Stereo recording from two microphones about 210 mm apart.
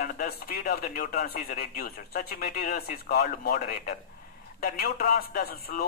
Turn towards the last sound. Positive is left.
turn(degrees=45)  # may be behind; listen again after turning